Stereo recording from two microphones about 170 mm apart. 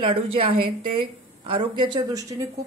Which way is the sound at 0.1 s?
35° right (ahead or behind).